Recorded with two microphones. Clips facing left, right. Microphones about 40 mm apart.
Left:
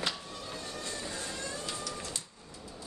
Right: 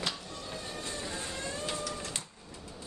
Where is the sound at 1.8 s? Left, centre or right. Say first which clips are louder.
Right 2 dB; right.